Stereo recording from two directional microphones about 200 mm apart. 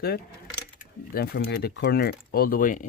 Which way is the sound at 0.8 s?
50° left (ahead or behind).